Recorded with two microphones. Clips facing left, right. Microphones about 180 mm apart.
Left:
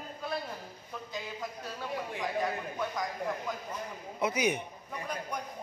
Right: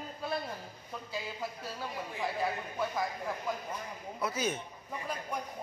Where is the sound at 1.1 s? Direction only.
5° right (ahead or behind).